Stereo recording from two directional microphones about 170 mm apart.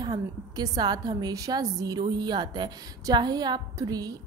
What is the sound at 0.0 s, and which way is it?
A woman's voice, 25° right (ahead or behind).